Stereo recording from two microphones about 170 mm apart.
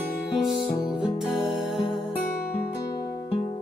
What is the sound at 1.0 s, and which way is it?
Music, centre (ahead or behind).